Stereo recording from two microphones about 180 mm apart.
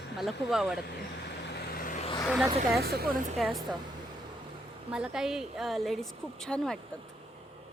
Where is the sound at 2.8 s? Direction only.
65° right (ahead or behind).